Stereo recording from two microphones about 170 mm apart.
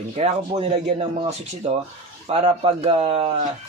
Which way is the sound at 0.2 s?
40° right (ahead or behind).